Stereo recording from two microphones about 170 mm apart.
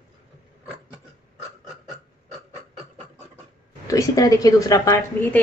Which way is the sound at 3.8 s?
20° left (ahead or behind).